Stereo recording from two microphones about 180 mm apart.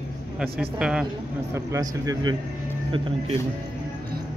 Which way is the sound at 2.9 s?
30° right (ahead or behind).